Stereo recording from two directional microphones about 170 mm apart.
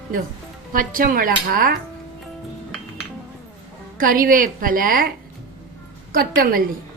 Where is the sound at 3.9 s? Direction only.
55° right (ahead or behind).